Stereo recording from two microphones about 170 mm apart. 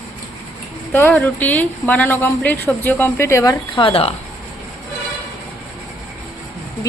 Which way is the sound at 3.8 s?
35° left (ahead or behind).